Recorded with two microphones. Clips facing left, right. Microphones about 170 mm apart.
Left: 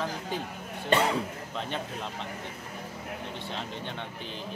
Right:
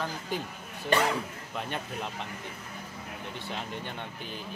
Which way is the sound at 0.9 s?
25° left (ahead or behind).